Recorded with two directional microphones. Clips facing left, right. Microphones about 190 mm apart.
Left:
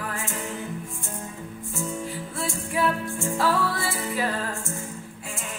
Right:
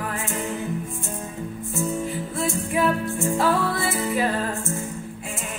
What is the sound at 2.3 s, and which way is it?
Music, 20° right (ahead or behind).